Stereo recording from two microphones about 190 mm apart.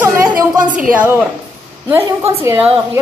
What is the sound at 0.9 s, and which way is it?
A woman's voice, 10° right (ahead or behind).